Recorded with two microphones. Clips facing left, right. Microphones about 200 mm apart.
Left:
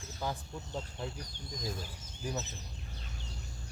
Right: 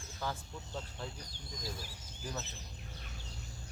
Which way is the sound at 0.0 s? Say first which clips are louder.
Left 2 dB; 20° left (ahead or behind).